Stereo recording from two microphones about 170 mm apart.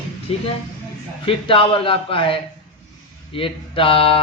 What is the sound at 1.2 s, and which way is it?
Speech, 30° left (ahead or behind).